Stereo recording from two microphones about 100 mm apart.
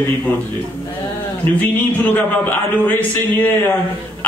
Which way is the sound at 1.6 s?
15° left (ahead or behind).